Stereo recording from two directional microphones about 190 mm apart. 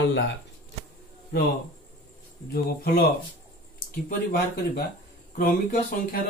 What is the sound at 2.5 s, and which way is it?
Speech, 50° left (ahead or behind).